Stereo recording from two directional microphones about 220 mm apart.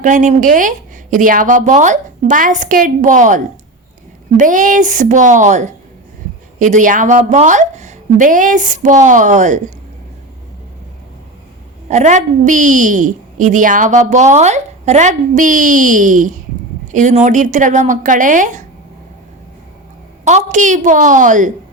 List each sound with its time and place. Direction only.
0.0 s a woman's voice: 35° right (ahead or behind)
11.9 s a woman's voice: 35° right (ahead or behind)
20.2 s a woman's voice: 30° right (ahead or behind)